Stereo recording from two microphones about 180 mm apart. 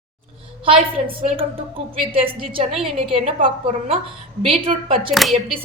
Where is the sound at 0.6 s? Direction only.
30° right (ahead or behind).